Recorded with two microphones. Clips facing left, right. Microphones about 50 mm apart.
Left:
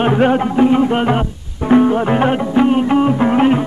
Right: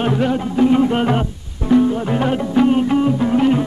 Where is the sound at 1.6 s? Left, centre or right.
Left.